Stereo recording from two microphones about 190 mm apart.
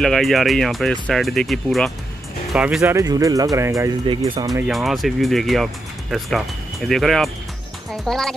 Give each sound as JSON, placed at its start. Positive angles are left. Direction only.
{"t": 0.0, "sound": "speech", "side_deg": 0}
{"t": 2.8, "sound": "speech", "side_deg": -15}
{"t": 4.6, "sound": "speech", "side_deg": 0}